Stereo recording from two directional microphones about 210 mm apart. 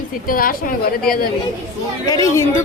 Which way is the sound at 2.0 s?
15° left (ahead or behind).